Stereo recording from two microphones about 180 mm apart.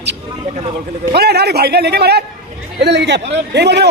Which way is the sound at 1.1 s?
65° right (ahead or behind).